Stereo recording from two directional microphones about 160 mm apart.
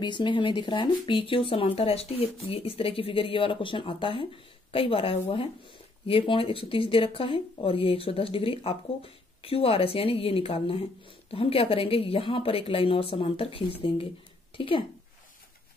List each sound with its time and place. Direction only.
0.0 s speech: 30° left (ahead or behind)